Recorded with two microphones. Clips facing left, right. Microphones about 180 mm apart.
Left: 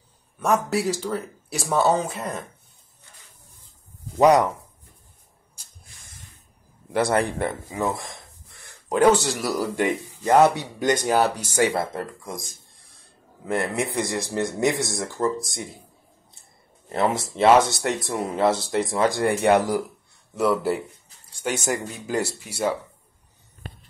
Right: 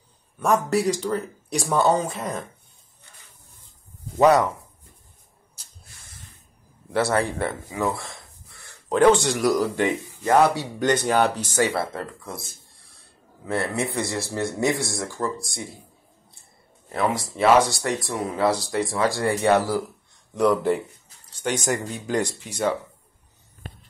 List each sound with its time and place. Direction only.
0.4 s speech: centre (ahead or behind)
4.2 s speech: 20° left (ahead or behind)
6.9 s speech: 15° left (ahead or behind)
10.2 s speech: 20° left (ahead or behind)
11.5 s speech: 15° left (ahead or behind)
13.5 s speech: 15° left (ahead or behind)
16.9 s speech: 25° left (ahead or behind)
20.3 s speech: 5° left (ahead or behind)